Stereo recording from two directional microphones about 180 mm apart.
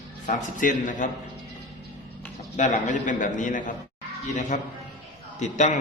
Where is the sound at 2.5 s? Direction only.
40° left (ahead or behind).